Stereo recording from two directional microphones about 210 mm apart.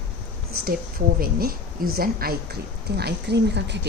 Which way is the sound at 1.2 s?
45° right (ahead or behind).